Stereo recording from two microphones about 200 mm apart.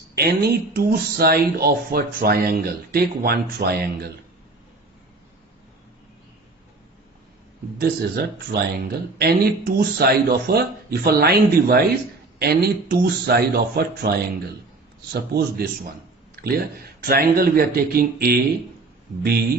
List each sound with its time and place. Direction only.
0.2 s speech: 50° right (ahead or behind)
7.8 s speech: 50° right (ahead or behind)